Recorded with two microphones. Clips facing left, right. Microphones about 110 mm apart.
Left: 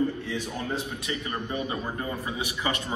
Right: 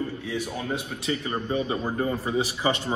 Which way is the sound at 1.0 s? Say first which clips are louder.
Right 4 dB; 25° right (ahead or behind).